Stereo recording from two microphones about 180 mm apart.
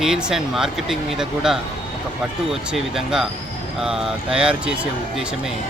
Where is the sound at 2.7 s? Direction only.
5° right (ahead or behind).